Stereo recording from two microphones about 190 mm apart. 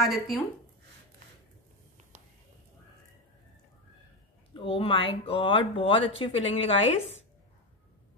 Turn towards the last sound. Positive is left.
turn(degrees=30)  # may be behind; listen again after turning